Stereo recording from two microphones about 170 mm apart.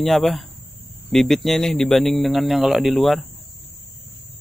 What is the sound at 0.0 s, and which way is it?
Speech, centre (ahead or behind).